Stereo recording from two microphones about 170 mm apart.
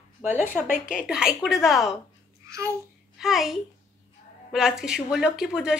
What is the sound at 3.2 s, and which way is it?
A woman's voice, centre (ahead or behind).